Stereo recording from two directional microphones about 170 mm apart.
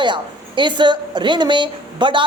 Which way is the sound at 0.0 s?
25° right (ahead or behind).